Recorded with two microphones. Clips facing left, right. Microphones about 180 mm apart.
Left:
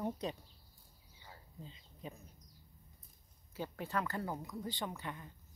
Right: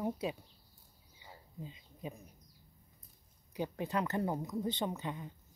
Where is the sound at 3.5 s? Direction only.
15° right (ahead or behind).